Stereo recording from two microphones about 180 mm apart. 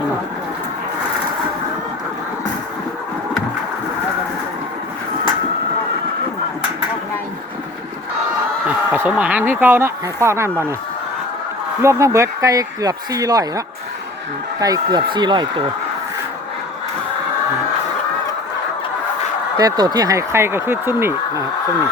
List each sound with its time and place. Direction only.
8.9 s speech: 5° right (ahead or behind)
11.8 s speech: 15° right (ahead or behind)
14.6 s speech: 20° right (ahead or behind)
19.5 s speech: 20° right (ahead or behind)